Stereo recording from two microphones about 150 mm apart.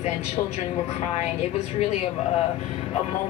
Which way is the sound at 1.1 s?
45° left (ahead or behind).